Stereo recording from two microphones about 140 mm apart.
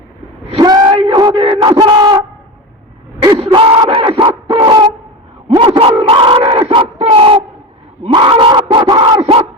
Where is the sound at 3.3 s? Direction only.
45° right (ahead or behind).